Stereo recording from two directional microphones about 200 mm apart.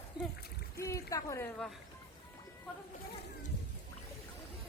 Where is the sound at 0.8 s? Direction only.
15° left (ahead or behind).